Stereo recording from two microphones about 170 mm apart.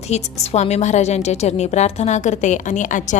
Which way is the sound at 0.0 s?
40° left (ahead or behind).